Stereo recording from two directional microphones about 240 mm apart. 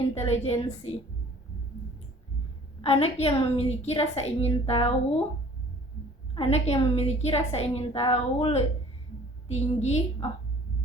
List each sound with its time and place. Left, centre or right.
0.1 s a woman's voice: left
2.8 s a woman's voice: left
6.3 s a woman's voice: left